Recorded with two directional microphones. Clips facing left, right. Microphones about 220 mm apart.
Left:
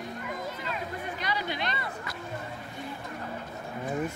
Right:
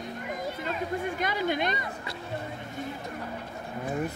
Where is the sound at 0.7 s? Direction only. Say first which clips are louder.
Right 5 dB; 45° right (ahead or behind).